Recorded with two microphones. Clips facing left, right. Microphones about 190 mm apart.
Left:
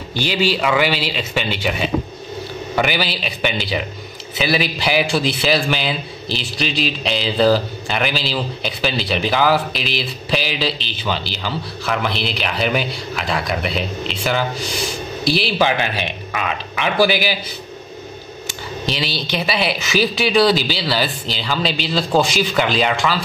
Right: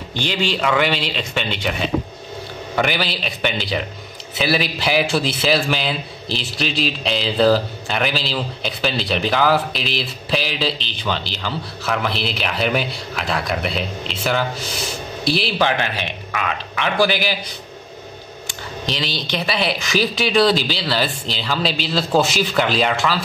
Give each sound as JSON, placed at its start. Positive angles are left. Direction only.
{"t": 0.1, "sound": "a man's voice", "side_deg": 5}
{"t": 16.3, "sound": "speech", "side_deg": 25}
{"t": 16.7, "sound": "a man's voice", "side_deg": 10}
{"t": 18.5, "sound": "a man's voice", "side_deg": 5}